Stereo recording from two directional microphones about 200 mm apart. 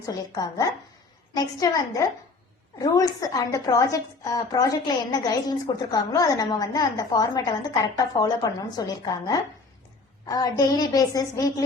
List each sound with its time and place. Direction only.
0.0 s a woman's voice: 15° left (ahead or behind)